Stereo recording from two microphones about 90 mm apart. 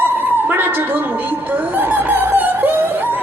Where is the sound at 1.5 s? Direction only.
20° right (ahead or behind).